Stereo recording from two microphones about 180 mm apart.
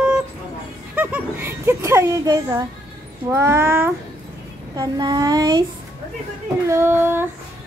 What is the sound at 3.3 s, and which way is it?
Child singing, 15° right (ahead or behind).